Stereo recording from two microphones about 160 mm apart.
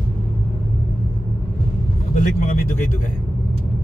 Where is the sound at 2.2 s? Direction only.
55° left (ahead or behind).